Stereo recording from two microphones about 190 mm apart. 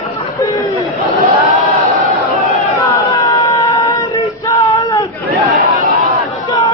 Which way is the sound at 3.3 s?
25° left (ahead or behind).